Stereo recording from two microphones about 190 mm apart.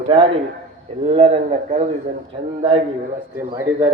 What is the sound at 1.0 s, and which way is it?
Speech, 30° right (ahead or behind).